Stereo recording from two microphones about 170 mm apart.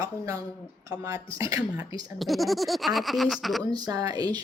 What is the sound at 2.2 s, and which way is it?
Speech, centre (ahead or behind).